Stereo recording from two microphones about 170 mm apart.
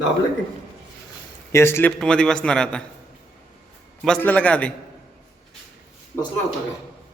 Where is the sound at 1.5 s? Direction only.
15° left (ahead or behind).